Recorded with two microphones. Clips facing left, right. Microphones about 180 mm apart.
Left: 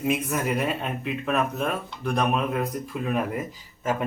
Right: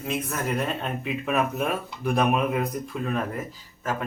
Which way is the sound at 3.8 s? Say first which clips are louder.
Left 3 dB; 20° left (ahead or behind).